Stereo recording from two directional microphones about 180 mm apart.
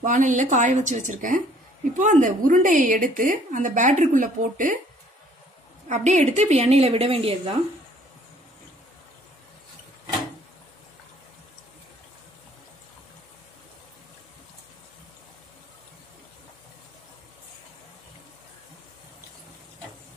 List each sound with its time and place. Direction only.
0.0 s a woman's voice: 45° right (ahead or behind)
5.9 s a woman's voice: 40° right (ahead or behind)